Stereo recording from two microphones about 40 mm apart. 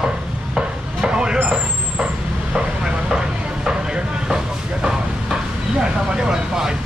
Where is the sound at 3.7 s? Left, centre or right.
Centre.